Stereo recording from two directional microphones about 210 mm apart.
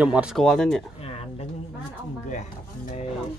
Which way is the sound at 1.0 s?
25° left (ahead or behind).